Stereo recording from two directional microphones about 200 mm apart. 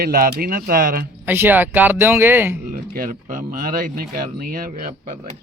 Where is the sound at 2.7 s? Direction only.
45° right (ahead or behind).